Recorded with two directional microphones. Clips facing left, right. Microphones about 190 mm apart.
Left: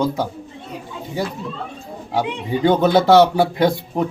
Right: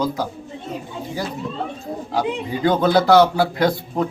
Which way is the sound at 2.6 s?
20° left (ahead or behind).